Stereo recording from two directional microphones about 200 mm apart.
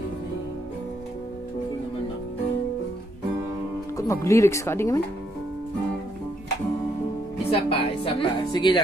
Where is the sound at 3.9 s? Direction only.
15° left (ahead or behind).